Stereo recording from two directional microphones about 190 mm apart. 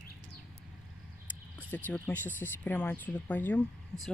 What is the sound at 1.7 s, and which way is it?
A woman's voice, 10° left (ahead or behind).